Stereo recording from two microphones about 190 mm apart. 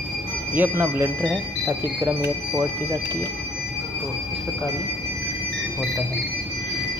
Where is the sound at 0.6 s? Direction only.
10° right (ahead or behind).